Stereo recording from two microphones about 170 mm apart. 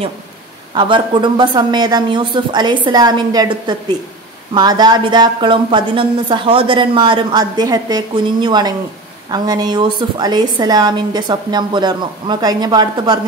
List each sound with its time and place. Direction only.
0.7 s a woman's voice: 30° right (ahead or behind)